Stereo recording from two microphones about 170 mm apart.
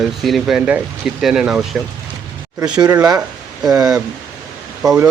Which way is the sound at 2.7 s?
25° right (ahead or behind).